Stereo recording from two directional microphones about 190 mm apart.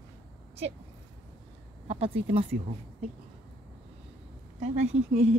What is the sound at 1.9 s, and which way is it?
Speech, 30° right (ahead or behind).